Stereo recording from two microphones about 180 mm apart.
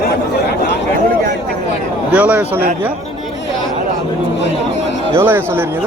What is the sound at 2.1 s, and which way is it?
Speech, 5° right (ahead or behind).